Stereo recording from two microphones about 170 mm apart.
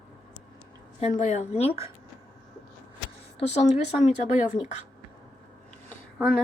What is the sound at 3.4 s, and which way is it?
Speech, 40° left (ahead or behind).